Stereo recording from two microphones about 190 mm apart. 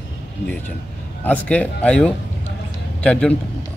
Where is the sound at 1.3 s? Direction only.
10° left (ahead or behind).